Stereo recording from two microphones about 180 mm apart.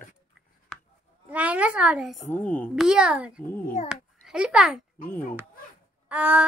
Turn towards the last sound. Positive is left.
turn(degrees=-10)  # may be behind; listen again after turning